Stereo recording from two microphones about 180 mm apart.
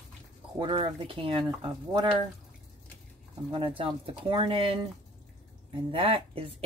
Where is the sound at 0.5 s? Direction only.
30° right (ahead or behind).